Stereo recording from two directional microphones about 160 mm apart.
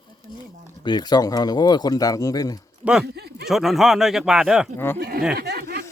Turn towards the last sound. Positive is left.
turn(degrees=-75)  # may be behind; listen again after turning